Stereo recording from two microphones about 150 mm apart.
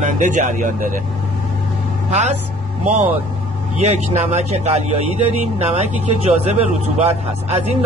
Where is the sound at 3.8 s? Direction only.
45° right (ahead or behind).